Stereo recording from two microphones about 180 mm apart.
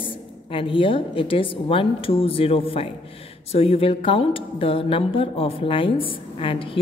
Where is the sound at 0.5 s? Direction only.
30° left (ahead or behind).